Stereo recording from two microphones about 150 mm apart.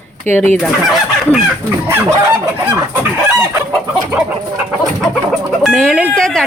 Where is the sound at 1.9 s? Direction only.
20° right (ahead or behind).